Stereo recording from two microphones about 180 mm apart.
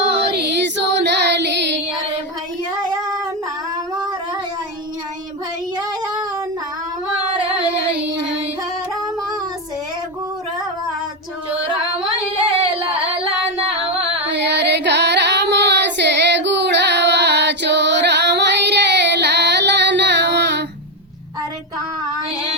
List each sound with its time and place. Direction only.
0.3 s child singing: 70° right (ahead or behind)
14.3 s child singing: 75° right (ahead or behind)